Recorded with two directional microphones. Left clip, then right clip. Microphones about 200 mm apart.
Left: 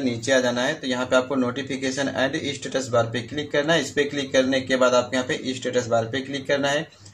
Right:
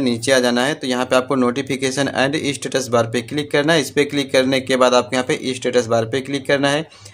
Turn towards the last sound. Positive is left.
turn(degrees=-45)  # may be behind; listen again after turning